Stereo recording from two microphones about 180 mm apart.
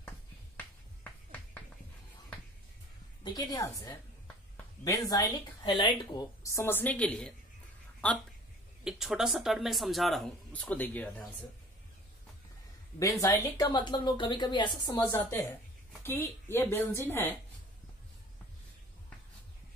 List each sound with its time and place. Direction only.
0.6 s music: 10° left (ahead or behind)
3.3 s a woman's voice: 20° left (ahead or behind)
13.0 s a woman's voice: 20° left (ahead or behind)
16.0 s a woman's voice: 10° left (ahead or behind)